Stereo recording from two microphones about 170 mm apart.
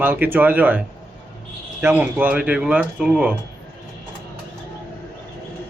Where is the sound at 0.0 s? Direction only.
10° right (ahead or behind).